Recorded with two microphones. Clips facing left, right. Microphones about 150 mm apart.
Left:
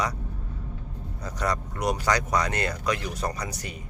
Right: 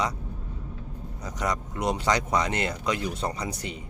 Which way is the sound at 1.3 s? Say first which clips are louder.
Even; 20° right (ahead or behind).